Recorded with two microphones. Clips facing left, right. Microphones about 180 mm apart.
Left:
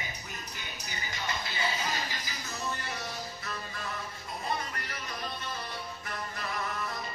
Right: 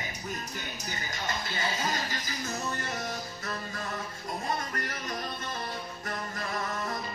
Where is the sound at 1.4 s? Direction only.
45° right (ahead or behind).